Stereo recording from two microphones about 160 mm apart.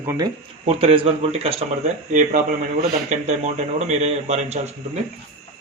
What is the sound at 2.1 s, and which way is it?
Speech, 50° right (ahead or behind).